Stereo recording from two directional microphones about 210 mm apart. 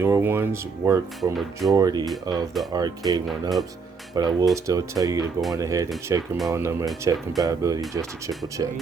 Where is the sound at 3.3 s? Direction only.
Centre (ahead or behind).